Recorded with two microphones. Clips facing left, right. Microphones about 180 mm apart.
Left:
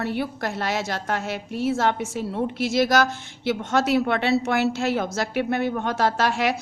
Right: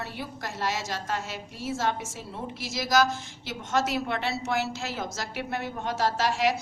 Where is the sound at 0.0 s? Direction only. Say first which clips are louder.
Left 10 dB; 65° left (ahead or behind).